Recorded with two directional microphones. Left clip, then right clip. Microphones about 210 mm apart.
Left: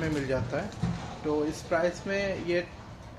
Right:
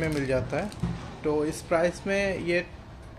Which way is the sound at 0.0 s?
30° right (ahead or behind).